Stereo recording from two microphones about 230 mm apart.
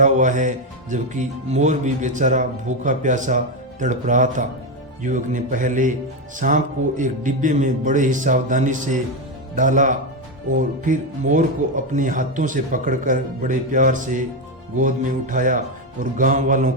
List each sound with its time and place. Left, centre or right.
0.0 s speech: right